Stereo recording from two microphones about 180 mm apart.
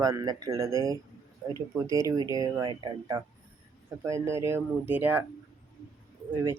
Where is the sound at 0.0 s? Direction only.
20° right (ahead or behind).